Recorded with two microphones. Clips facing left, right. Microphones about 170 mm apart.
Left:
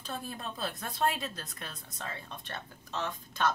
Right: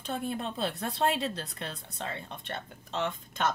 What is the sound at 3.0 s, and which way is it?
Speech, 20° right (ahead or behind).